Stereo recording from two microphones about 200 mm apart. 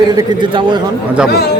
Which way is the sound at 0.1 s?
20° right (ahead or behind).